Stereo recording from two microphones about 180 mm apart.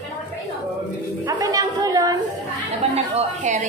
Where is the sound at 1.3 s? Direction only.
20° right (ahead or behind).